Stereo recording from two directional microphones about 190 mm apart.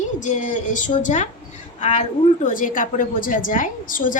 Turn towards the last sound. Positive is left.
turn(degrees=45)  # may be behind; listen again after turning